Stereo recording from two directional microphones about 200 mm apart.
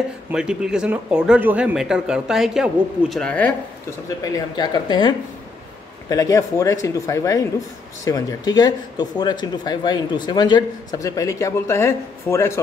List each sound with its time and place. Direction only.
0.3 s speech: 5° right (ahead or behind)
4.2 s speech: 20° left (ahead or behind)